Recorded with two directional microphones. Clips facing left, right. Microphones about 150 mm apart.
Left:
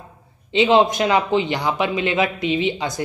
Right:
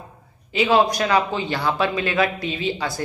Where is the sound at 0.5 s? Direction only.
25° left (ahead or behind).